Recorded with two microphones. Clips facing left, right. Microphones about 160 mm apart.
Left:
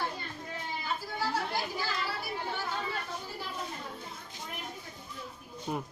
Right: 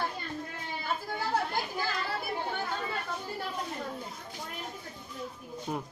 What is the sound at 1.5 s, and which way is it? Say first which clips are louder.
Children playing: right 1 dB; 55° right (ahead or behind).